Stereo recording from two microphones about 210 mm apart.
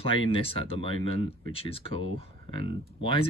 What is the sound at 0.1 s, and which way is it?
Speech, 25° left (ahead or behind).